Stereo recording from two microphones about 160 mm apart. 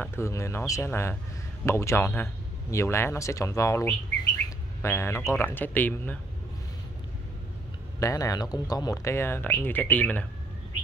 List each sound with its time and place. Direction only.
0.0 s speech: 15° left (ahead or behind)
8.0 s speech: 20° left (ahead or behind)